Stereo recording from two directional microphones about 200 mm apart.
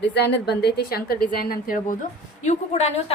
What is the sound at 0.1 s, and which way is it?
A woman's voice, 60° left (ahead or behind).